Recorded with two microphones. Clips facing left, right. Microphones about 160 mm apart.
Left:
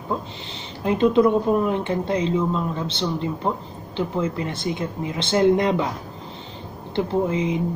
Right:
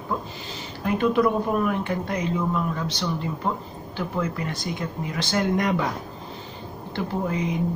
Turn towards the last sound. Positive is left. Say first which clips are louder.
# left 4 dB
turn(degrees=20)  # may be behind; listen again after turning